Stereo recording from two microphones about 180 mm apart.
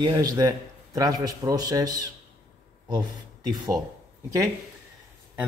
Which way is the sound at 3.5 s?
20° right (ahead or behind).